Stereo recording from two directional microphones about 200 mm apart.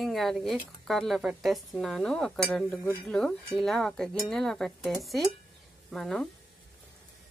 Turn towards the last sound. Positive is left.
turn(degrees=0)  # may be behind; listen again after turning